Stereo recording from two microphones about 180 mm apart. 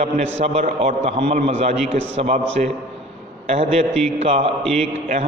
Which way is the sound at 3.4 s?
35° right (ahead or behind).